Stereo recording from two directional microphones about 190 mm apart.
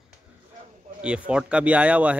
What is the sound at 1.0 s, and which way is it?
Speech, 5° right (ahead or behind).